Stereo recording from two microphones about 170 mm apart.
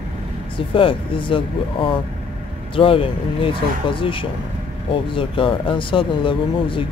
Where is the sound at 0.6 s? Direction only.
30° left (ahead or behind).